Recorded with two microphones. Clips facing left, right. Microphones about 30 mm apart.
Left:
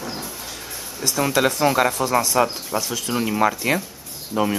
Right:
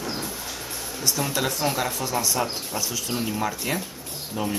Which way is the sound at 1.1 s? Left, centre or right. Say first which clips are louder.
Left 9 dB; left.